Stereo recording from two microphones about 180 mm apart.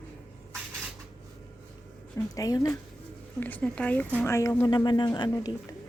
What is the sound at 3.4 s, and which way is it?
A woman's voice, 10° left (ahead or behind).